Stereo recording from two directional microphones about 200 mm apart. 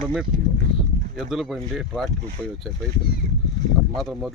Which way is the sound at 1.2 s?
Centre (ahead or behind).